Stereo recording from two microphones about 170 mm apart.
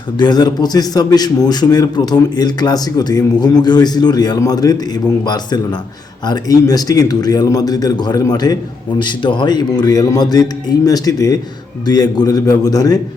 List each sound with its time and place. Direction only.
0.2 s a man's voice: 25° left (ahead or behind)